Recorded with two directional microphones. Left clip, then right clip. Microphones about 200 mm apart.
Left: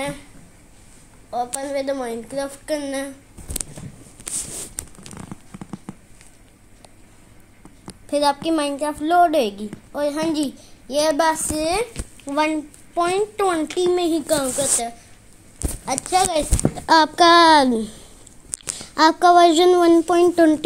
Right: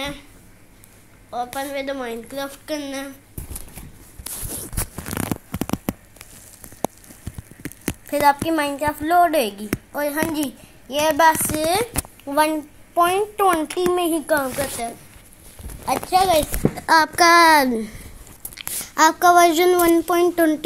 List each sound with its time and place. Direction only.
1.3 s a child's voice: 15° right (ahead or behind)
5.1 s a sound: 60° right (ahead or behind)
8.1 s a woman's voice: 5° left (ahead or behind)
12.3 s a child's voice: 15° right (ahead or behind)